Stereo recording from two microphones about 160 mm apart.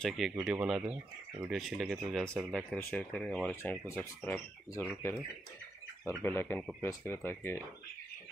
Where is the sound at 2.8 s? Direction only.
10° left (ahead or behind).